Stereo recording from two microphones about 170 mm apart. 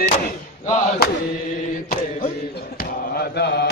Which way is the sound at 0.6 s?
60° left (ahead or behind).